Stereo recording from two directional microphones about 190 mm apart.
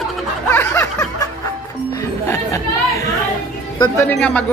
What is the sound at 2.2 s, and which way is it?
Chatter, 15° left (ahead or behind).